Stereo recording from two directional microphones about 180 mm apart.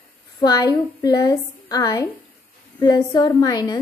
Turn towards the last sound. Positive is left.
turn(degrees=20)  # may be behind; listen again after turning